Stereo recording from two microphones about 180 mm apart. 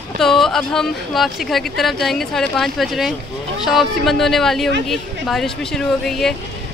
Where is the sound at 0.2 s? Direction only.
Centre (ahead or behind).